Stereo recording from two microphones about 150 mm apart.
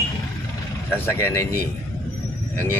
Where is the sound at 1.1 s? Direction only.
15° left (ahead or behind).